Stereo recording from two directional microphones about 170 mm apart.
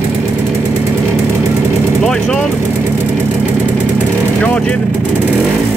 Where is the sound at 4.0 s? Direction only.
10° left (ahead or behind).